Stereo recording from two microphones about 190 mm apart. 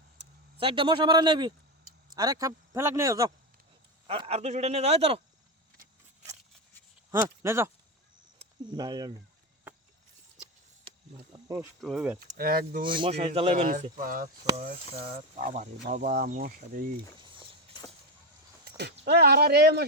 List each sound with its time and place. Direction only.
0.6 s a man's voice: 25° right (ahead or behind)
4.0 s speech: 30° right (ahead or behind)
7.1 s speech: 15° right (ahead or behind)
10.8 s insect: 20° right (ahead or behind)
11.8 s speech: centre (ahead or behind)
12.3 s speech: 50° right (ahead or behind)
12.8 s speech: 25° right (ahead or behind); by 14.3 s 45° right (ahead or behind)
15.4 s speech: 40° right (ahead or behind)
17.2 s walk: 25° right (ahead or behind)
18.8 s speech: 60° right (ahead or behind)